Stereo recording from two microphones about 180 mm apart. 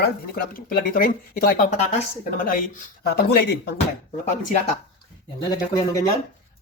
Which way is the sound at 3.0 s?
60° left (ahead or behind).